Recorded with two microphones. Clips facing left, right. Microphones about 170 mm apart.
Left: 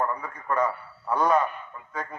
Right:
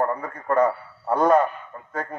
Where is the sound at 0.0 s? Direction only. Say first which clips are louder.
Right 4 dB; 50° right (ahead or behind).